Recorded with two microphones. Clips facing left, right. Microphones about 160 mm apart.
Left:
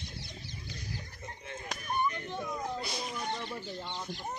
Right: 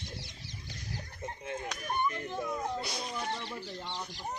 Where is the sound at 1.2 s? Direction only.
45° right (ahead or behind).